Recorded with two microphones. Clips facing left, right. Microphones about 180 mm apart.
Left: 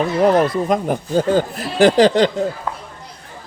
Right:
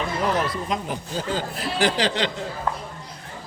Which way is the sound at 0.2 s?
50° left (ahead or behind).